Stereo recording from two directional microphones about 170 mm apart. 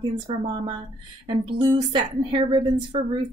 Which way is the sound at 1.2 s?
25° right (ahead or behind).